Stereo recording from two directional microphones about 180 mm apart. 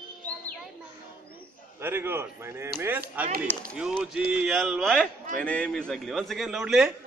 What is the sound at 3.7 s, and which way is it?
A man's voice, centre (ahead or behind).